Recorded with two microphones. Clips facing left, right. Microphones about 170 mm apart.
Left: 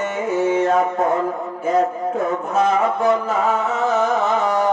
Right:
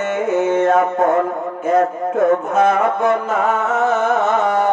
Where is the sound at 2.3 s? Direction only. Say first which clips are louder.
Right 4 dB; 60° right (ahead or behind).